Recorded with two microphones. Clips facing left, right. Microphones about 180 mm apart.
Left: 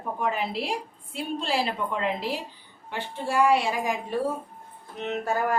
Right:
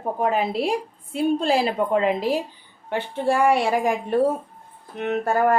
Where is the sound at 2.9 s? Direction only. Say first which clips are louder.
Right 7 dB; 55° right (ahead or behind).